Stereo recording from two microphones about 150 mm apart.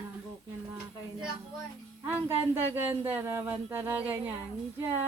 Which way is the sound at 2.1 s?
15° right (ahead or behind).